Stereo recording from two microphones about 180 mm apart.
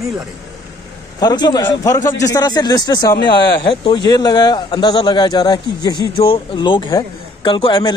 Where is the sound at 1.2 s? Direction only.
20° left (ahead or behind).